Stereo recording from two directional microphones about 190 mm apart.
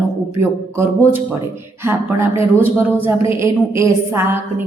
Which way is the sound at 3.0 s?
15° right (ahead or behind).